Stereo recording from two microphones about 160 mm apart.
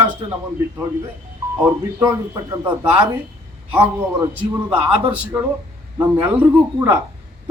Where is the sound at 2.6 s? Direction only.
10° right (ahead or behind).